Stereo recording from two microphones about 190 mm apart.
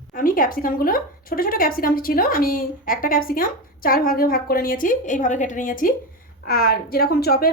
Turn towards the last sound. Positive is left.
turn(degrees=55)  # may be behind; listen again after turning